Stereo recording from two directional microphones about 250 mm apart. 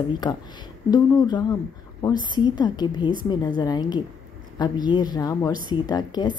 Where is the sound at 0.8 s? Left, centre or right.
Centre.